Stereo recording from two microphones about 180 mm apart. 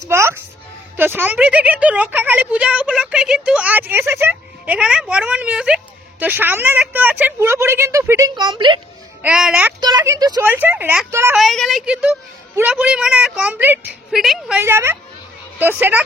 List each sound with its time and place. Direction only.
0.1 s music: 15° right (ahead or behind)
0.9 s speech: 10° right (ahead or behind); by 8.8 s 25° right (ahead or behind)
9.2 s speech: 5° right (ahead or behind)
9.8 s a woman's voice: 20° right (ahead or behind)
10.4 s speech: 10° right (ahead or behind)
11.3 s a woman's voice: centre (ahead or behind)
14.6 s speech: 15° right (ahead or behind)